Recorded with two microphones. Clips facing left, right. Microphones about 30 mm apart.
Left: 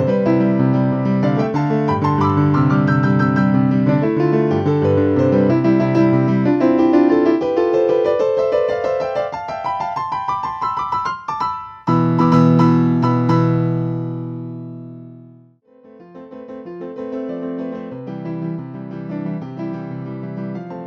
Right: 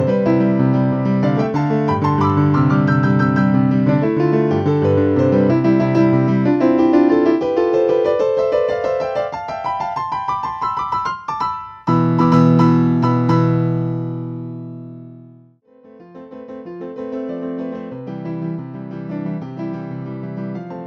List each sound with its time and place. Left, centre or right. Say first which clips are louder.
0.0 s music: even; centre
17.0 s music: even; centre